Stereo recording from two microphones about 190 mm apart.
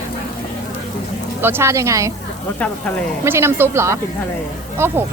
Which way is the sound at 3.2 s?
15° right (ahead or behind).